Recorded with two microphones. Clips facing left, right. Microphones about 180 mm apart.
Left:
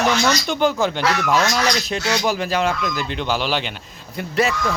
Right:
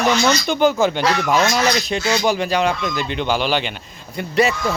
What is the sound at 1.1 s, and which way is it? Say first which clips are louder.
Speech: right 2 dB; 25° right (ahead or behind).